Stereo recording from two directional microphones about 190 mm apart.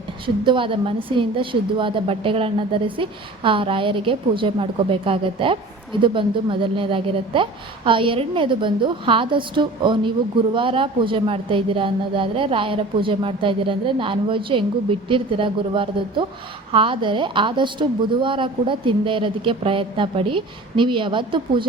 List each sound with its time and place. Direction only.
0.4 s a woman's voice: 25° right (ahead or behind)